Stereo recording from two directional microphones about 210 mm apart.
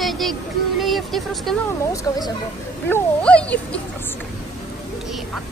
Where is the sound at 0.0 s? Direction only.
Centre (ahead or behind).